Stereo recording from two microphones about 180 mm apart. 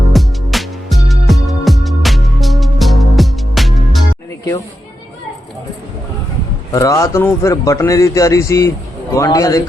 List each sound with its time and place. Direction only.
0.1 s music: centre (ahead or behind)
6.7 s speech: 15° left (ahead or behind)